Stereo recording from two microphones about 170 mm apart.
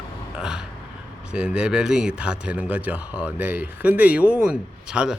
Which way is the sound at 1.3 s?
5° right (ahead or behind).